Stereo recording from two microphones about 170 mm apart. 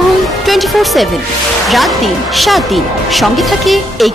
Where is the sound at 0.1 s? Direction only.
Centre (ahead or behind).